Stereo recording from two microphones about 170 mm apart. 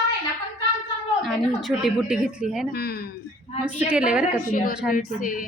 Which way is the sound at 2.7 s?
70° left (ahead or behind).